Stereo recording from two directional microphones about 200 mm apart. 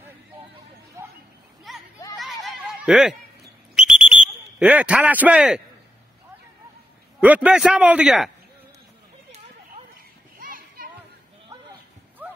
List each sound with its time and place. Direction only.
1.0 s a sound: 15° right (ahead or behind)
1.7 s a sound: centre (ahead or behind)
3.7 s smoke detector: centre (ahead or behind)
4.6 s speech: 5° right (ahead or behind)
7.2 s a man's voice: 5° right (ahead or behind)
10.4 s children playing: 45° right (ahead or behind)